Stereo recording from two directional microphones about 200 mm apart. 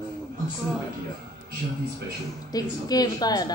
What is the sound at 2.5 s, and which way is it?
A woman's voice, 20° left (ahead or behind).